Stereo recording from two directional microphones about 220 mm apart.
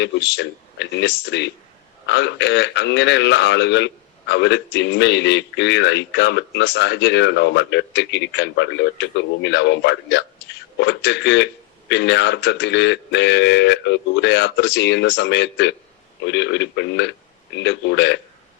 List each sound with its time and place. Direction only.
0.0 s speech: 50° left (ahead or behind)